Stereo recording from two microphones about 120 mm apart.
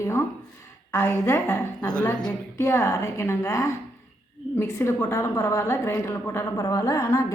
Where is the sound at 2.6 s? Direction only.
25° left (ahead or behind).